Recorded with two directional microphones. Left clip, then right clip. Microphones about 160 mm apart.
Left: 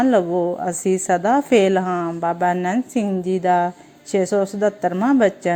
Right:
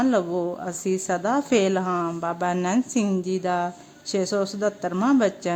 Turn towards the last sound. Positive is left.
turn(degrees=15)  # may be behind; listen again after turning